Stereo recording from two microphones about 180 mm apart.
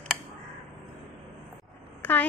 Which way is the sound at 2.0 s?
10° left (ahead or behind).